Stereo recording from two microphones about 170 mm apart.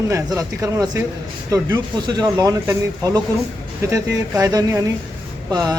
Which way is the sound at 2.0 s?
25° right (ahead or behind).